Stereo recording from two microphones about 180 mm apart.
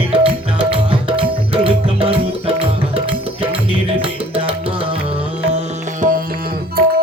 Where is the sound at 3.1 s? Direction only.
30° right (ahead or behind).